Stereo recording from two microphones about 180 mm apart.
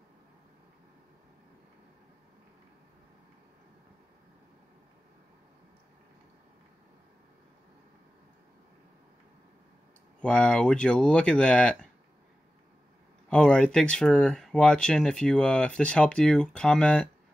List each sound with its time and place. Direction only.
10.2 s speech: 5° left (ahead or behind)
13.3 s speech: 5° left (ahead or behind)